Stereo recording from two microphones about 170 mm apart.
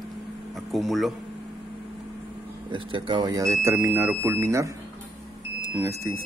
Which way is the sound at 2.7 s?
30° right (ahead or behind).